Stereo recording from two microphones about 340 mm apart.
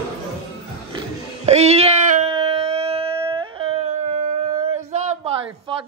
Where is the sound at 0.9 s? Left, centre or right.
Centre.